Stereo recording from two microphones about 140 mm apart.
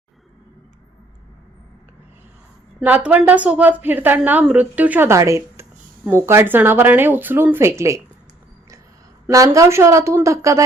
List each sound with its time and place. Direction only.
2.8 s a woman's voice: 10° right (ahead or behind)
9.2 s a woman's voice: 20° right (ahead or behind)